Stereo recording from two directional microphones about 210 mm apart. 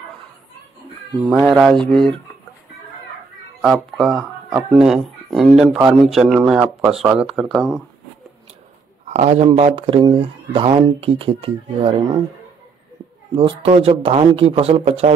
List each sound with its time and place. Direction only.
1.6 s speech: centre (ahead or behind)
3.6 s speech: centre (ahead or behind)
9.0 s speech: 35° right (ahead or behind)
13.3 s speech: 25° right (ahead or behind)